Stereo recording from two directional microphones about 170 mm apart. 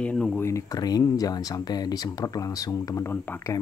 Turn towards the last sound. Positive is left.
turn(degrees=15)  # may be behind; listen again after turning